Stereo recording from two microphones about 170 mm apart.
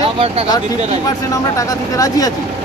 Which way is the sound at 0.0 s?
35° right (ahead or behind).